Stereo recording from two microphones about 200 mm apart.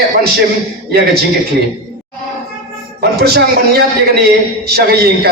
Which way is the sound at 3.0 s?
50° right (ahead or behind).